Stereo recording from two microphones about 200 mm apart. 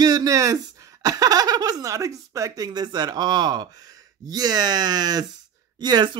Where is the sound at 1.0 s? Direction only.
15° right (ahead or behind).